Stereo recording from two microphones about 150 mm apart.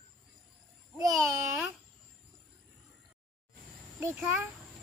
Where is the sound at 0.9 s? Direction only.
25° right (ahead or behind).